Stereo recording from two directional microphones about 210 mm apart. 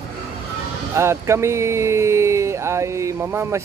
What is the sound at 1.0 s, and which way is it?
Speech, 15° right (ahead or behind).